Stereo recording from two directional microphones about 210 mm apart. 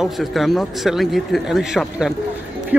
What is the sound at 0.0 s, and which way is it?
Speech, centre (ahead or behind).